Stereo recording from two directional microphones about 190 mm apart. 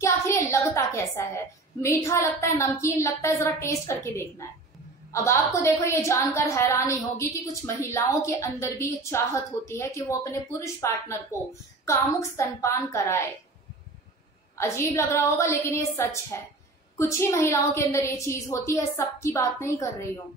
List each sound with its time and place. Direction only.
0.0 s a woman's voice: 15° left (ahead or behind)
14.6 s a woman's voice: 15° left (ahead or behind)